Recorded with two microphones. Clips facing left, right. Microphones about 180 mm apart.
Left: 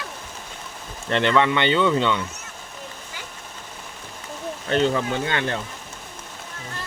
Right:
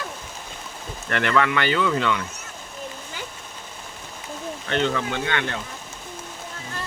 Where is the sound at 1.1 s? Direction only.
25° left (ahead or behind).